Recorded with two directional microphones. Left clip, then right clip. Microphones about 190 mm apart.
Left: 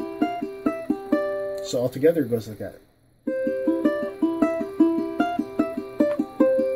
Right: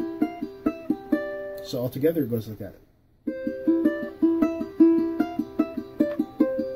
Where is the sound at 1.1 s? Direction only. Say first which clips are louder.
Left 6 dB; 20° left (ahead or behind).